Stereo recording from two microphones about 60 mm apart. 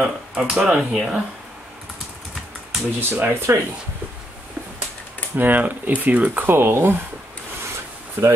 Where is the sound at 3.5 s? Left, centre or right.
Right.